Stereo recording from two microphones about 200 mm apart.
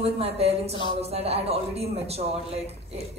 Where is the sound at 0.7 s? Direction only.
25° left (ahead or behind).